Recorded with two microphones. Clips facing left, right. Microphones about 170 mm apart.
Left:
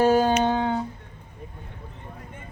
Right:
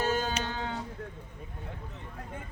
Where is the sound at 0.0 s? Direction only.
60° left (ahead or behind).